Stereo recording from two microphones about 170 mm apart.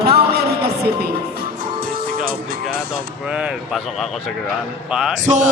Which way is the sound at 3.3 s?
5° right (ahead or behind).